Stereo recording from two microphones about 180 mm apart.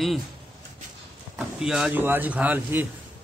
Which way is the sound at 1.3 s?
5° right (ahead or behind).